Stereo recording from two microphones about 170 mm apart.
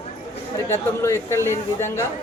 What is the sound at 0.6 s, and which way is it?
Speech, 15° left (ahead or behind).